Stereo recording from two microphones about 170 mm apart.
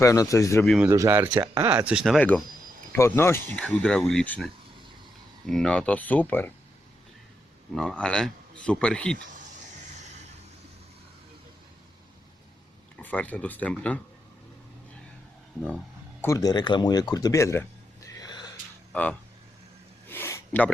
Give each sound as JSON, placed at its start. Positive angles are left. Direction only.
{"t": 0.0, "sound": "speech", "side_deg": 20}
{"t": 0.6, "sound": "a man's voice", "side_deg": 0}
{"t": 0.9, "sound": "speech", "side_deg": -15}
{"t": 1.9, "sound": "a man's voice", "side_deg": 0}
{"t": 5.5, "sound": "speech", "side_deg": 5}
{"t": 7.8, "sound": "a man's voice", "side_deg": 5}
{"t": 13.0, "sound": "speech", "side_deg": 10}
{"t": 16.2, "sound": "speech", "side_deg": 20}
{"t": 18.9, "sound": "speech", "side_deg": 5}
{"t": 20.1, "sound": "a sound", "side_deg": 15}